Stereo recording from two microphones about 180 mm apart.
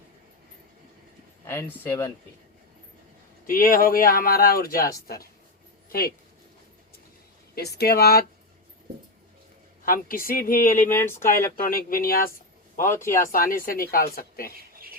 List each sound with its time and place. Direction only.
1.5 s speech: 15° left (ahead or behind)
3.4 s speech: 50° left (ahead or behind)
7.5 s speech: 65° left (ahead or behind)
9.8 s speech: 50° left (ahead or behind)
10.8 s speech: 15° left (ahead or behind)
11.6 s speech: 50° left (ahead or behind)
14.5 s a sound: 55° right (ahead or behind)